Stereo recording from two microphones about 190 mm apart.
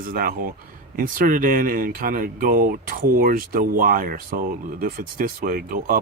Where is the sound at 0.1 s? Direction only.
50° right (ahead or behind).